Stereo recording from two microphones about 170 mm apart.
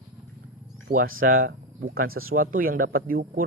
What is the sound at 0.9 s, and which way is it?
Speech, 55° right (ahead or behind).